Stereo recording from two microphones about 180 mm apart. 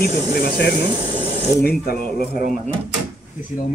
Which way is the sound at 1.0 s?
35° left (ahead or behind).